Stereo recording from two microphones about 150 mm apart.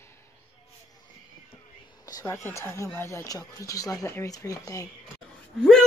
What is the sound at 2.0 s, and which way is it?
Speech, 20° left (ahead or behind).